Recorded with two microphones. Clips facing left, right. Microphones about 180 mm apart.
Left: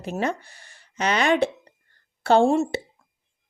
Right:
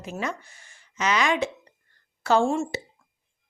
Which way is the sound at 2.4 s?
35° left (ahead or behind).